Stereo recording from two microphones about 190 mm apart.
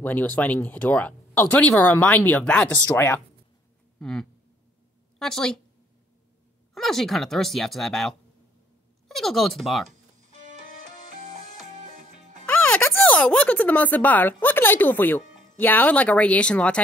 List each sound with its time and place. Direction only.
0.0 s speech: 10° left (ahead or behind)
6.7 s speech: centre (ahead or behind)
10.3 s music: 40° right (ahead or behind)
12.4 s speech: 5° left (ahead or behind)